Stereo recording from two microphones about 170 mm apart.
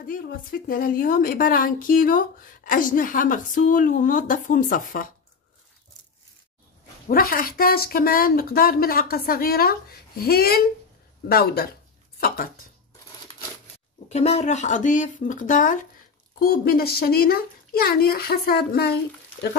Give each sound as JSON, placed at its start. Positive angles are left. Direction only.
{"t": 0.0, "sound": "a woman's voice", "side_deg": 55}
{"t": 7.1, "sound": "a woman's voice", "side_deg": 60}
{"t": 14.0, "sound": "speech", "side_deg": 40}
{"t": 16.3, "sound": "a woman's voice", "side_deg": 60}